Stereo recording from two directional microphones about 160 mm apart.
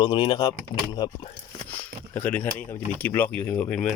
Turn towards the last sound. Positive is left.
turn(degrees=5)  # may be behind; listen again after turning